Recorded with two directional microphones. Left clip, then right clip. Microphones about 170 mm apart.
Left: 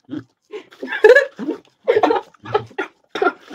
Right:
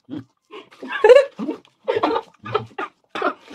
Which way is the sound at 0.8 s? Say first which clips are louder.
Left 2 dB; 25° left (ahead or behind).